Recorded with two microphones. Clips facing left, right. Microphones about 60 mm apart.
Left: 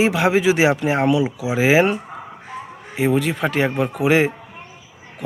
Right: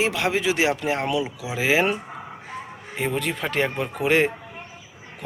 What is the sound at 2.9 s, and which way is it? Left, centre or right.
Speech, centre.